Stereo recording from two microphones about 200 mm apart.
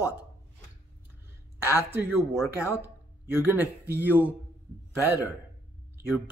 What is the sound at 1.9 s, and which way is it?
Speech, 10° right (ahead or behind).